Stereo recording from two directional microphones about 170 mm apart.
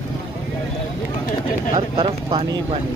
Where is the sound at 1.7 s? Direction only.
25° right (ahead or behind).